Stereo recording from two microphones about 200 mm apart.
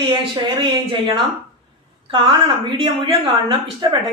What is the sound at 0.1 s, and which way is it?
Speech, 25° right (ahead or behind).